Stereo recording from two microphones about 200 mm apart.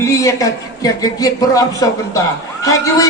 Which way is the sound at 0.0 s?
15° left (ahead or behind).